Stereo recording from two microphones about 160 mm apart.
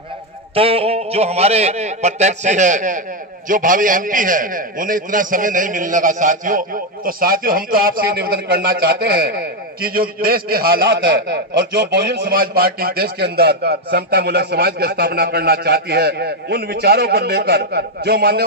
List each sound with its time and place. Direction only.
0.6 s a man's voice: 35° right (ahead or behind); by 10.8 s 70° right (ahead or behind)
11.2 s a man's voice: 90° right